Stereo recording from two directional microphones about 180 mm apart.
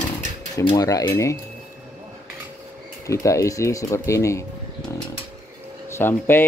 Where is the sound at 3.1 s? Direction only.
15° left (ahead or behind).